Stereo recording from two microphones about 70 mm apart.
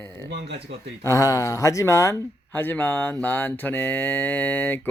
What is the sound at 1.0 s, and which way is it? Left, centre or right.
Speech, left.